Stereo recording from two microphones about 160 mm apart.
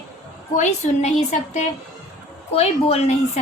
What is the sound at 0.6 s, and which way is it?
A woman's voice, 45° left (ahead or behind).